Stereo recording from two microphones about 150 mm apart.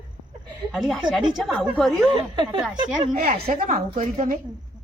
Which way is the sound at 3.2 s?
75° right (ahead or behind).